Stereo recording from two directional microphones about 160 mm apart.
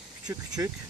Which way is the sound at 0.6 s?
20° right (ahead or behind).